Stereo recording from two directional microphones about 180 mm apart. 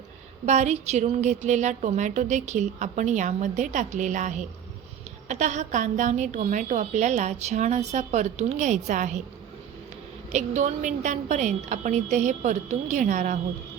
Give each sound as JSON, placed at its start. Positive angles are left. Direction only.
{"t": 0.4, "sound": "a woman's voice", "side_deg": -40}
{"t": 10.3, "sound": "a woman's voice", "side_deg": -40}